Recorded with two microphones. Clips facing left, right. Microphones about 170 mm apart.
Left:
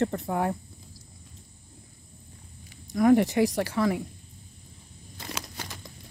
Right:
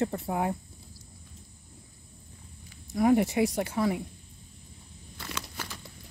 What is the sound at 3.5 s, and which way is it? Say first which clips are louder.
Speech: left 2 dB; 70° left (ahead or behind).